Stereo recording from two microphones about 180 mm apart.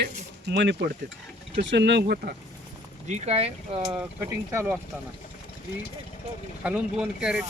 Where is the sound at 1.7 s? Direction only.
75° right (ahead or behind).